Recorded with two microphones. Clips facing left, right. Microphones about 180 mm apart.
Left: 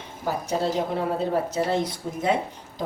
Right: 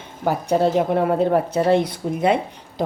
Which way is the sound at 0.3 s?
60° right (ahead or behind).